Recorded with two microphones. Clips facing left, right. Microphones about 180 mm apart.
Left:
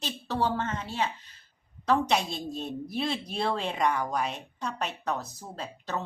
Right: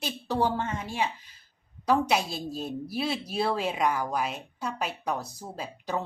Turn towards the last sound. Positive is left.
turn(degrees=-10)  # may be behind; listen again after turning